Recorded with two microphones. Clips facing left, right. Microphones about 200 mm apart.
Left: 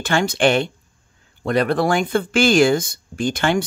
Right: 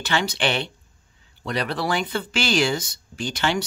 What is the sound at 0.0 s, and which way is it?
Speech, 50° left (ahead or behind).